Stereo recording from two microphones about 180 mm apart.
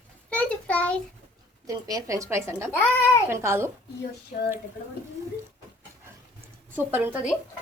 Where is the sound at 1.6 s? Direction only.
20° right (ahead or behind).